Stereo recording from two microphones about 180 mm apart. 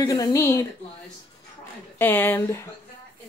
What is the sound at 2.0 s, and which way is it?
Speech, 10° left (ahead or behind).